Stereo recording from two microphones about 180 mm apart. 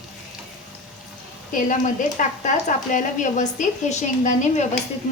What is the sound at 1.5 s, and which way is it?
A woman's voice, 45° left (ahead or behind).